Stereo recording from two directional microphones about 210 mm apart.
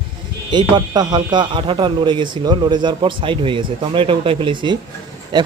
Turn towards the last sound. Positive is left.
turn(degrees=-20)  # may be behind; listen again after turning